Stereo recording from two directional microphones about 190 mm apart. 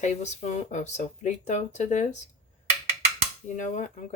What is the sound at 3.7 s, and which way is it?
Speech, 40° left (ahead or behind).